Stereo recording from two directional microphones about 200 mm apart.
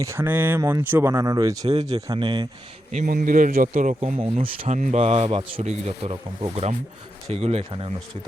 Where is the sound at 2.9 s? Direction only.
40° right (ahead or behind).